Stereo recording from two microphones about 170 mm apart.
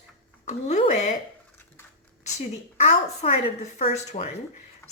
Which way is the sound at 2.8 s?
40° left (ahead or behind).